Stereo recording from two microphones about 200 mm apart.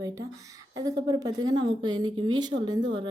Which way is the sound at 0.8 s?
20° right (ahead or behind).